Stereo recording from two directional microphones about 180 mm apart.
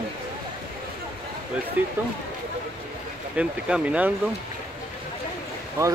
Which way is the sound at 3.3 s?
5° right (ahead or behind).